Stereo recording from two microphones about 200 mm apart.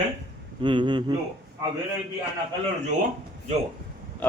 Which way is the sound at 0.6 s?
25° right (ahead or behind).